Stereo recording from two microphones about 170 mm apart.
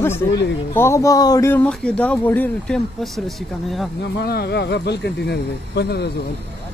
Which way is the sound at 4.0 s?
70° left (ahead or behind).